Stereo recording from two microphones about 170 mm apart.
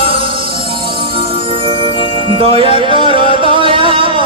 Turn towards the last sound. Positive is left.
turn(degrees=-30)  # may be behind; listen again after turning